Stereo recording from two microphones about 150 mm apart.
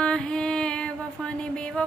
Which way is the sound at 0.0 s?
5° left (ahead or behind).